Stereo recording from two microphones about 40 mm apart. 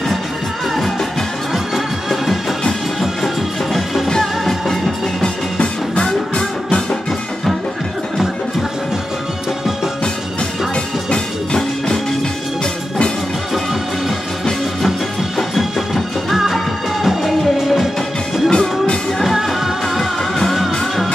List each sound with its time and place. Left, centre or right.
3.7 s music: centre
15.3 s music: centre
18.5 s music: left
19.2 s music: centre
20.0 s music: centre